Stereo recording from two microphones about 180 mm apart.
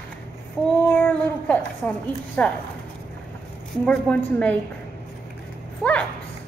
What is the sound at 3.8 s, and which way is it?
Speech, 5° left (ahead or behind).